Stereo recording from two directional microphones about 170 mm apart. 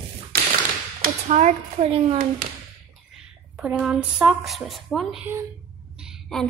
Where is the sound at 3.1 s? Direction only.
10° right (ahead or behind).